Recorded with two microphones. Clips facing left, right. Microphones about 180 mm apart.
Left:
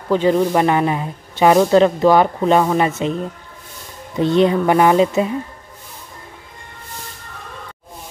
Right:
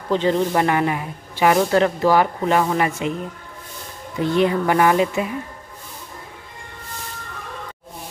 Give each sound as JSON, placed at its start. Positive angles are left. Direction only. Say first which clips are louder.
{"t": 0.1, "sound": "speech", "louder": "left 4 dB", "side_deg": 10}
{"t": 4.2, "sound": "speech", "louder": "left 4 dB", "side_deg": 25}